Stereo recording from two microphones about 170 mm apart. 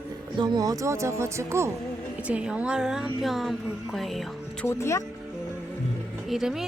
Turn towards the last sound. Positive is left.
turn(degrees=0)  # may be behind; listen again after turning